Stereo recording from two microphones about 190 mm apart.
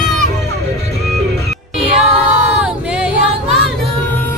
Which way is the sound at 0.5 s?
60° right (ahead or behind).